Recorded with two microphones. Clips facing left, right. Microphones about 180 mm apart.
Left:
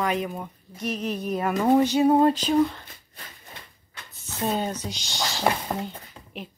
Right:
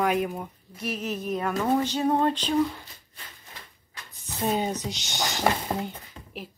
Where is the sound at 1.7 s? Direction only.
10° left (ahead or behind).